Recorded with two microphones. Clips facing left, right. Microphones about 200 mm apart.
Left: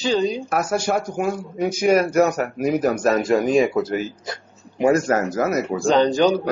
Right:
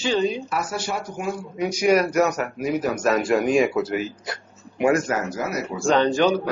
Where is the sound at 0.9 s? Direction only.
55° left (ahead or behind).